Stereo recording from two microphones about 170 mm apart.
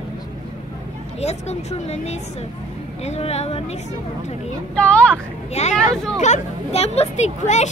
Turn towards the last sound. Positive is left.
turn(degrees=40)  # may be behind; listen again after turning